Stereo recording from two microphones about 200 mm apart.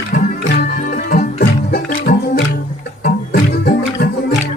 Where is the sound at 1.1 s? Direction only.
50° left (ahead or behind).